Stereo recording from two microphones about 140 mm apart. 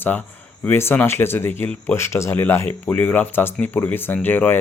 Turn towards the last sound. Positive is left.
turn(degrees=15)  # may be behind; listen again after turning